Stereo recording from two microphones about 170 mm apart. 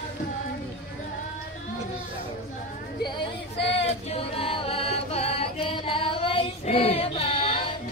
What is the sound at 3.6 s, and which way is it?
Chant, 35° left (ahead or behind).